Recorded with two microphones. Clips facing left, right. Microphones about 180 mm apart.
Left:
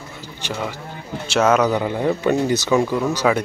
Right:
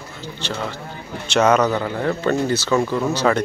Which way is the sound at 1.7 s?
15° left (ahead or behind).